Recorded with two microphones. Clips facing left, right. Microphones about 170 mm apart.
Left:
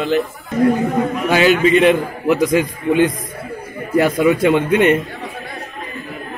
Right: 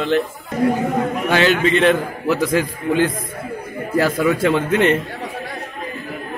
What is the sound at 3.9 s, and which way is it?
Speech, 20° left (ahead or behind).